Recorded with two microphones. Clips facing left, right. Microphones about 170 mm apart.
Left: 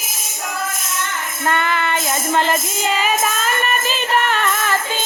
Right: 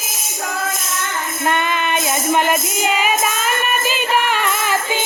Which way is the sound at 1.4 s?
20° right (ahead or behind).